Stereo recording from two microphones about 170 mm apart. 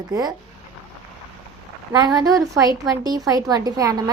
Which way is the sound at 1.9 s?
25° right (ahead or behind).